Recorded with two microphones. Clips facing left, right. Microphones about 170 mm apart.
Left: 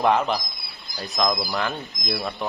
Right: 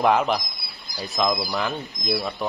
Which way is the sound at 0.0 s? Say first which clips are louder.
Right 1 dB; centre (ahead or behind).